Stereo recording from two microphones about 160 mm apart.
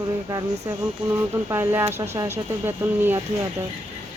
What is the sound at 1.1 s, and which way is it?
Speech, 15° right (ahead or behind).